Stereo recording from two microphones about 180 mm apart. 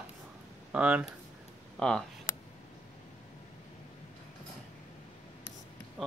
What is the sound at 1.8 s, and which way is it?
Speech, 5° left (ahead or behind).